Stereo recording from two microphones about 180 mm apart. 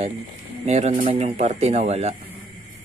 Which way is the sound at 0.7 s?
40° right (ahead or behind).